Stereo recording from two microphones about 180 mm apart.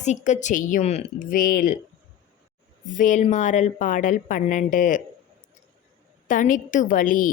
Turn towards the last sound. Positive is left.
turn(degrees=50)  # may be behind; listen again after turning